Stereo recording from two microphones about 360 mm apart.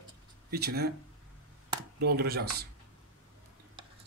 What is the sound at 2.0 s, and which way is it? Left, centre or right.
Speech, right.